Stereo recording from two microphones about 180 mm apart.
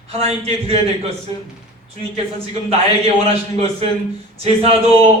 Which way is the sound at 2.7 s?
35° right (ahead or behind).